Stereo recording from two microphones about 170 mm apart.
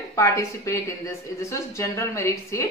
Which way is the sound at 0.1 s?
15° left (ahead or behind).